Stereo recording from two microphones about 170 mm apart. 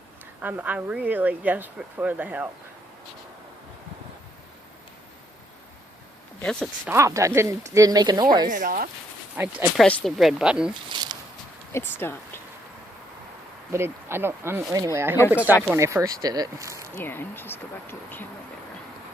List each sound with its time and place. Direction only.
0.4 s speech: 10° right (ahead or behind)
6.4 s speech: 5° left (ahead or behind)
6.8 s speech: 15° right (ahead or behind)
8.4 s speech: 55° right (ahead or behind)
9.3 s speech: 15° right (ahead or behind)
9.7 s speech: 5° left (ahead or behind)
10.8 s a sound: 25° right (ahead or behind)
11.7 s speech: 15° left (ahead or behind)
13.7 s speech: 15° right (ahead or behind)
16.9 s speech: 10° left (ahead or behind)